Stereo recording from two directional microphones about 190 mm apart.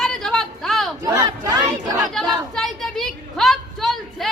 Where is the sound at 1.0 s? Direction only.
20° right (ahead or behind).